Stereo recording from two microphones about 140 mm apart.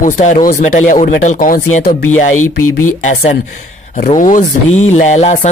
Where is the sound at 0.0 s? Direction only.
65° left (ahead or behind).